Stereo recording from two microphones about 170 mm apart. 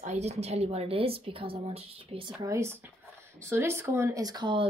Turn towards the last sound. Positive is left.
turn(degrees=-25)  # may be behind; listen again after turning